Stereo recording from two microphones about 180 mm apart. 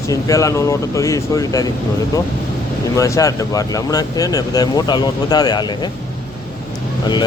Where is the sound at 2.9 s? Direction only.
20° left (ahead or behind).